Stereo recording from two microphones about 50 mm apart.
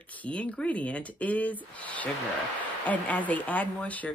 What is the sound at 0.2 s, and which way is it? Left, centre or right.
A woman's voice, left.